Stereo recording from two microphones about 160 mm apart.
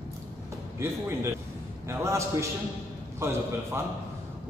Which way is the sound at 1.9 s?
15° right (ahead or behind).